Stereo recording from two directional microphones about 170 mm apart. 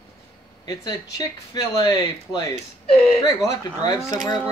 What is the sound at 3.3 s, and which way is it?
Speech, 20° left (ahead or behind).